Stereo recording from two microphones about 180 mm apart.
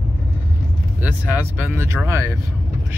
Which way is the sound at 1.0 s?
10° right (ahead or behind).